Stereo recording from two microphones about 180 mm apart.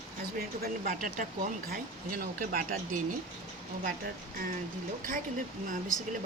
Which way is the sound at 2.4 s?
50° right (ahead or behind).